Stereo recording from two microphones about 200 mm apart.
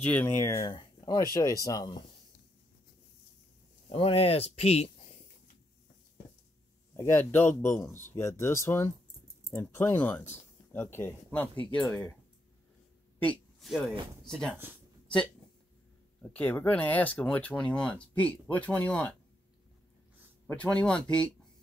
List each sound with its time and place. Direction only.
0.0 s speech: 10° left (ahead or behind)
3.9 s speech: 30° left (ahead or behind)
7.0 s speech: 10° left (ahead or behind)
13.2 s a man's voice: 5° left (ahead or behind)
16.2 s speech: 10° left (ahead or behind)
20.4 s speech: 5° left (ahead or behind)